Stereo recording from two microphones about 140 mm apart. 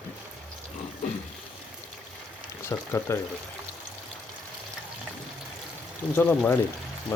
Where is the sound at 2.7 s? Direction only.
20° left (ahead or behind).